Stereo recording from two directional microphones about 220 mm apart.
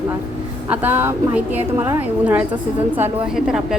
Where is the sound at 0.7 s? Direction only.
10° right (ahead or behind).